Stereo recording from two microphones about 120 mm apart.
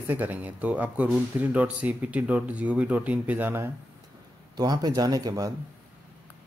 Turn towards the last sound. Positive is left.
turn(degrees=-30)  # may be behind; listen again after turning